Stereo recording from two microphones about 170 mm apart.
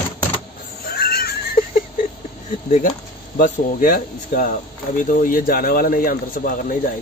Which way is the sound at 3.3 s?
55° left (ahead or behind).